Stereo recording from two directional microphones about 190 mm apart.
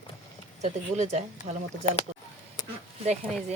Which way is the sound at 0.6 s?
35° right (ahead or behind).